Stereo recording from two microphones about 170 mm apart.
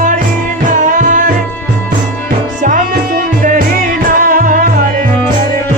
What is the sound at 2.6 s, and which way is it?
Music, 50° right (ahead or behind).